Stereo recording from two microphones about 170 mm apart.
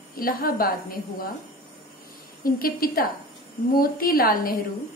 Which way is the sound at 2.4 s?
60° left (ahead or behind).